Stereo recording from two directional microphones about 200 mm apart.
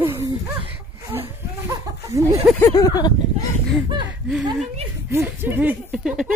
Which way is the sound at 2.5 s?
15° left (ahead or behind).